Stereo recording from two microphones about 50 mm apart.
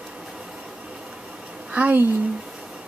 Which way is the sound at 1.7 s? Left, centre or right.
Right.